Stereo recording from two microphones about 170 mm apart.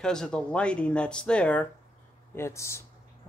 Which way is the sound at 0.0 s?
5° left (ahead or behind).